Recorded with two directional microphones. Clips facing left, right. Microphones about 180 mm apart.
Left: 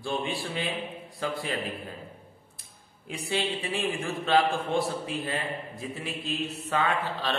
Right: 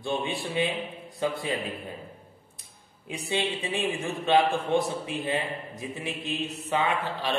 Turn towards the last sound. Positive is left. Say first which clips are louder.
# right 1 dB
turn(degrees=-15)  # may be behind; listen again after turning